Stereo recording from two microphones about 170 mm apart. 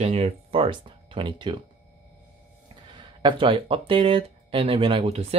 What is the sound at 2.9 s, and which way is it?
Speech, 30° right (ahead or behind).